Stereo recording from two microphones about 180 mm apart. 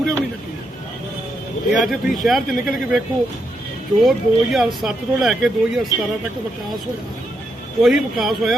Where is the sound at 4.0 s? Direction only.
Centre (ahead or behind).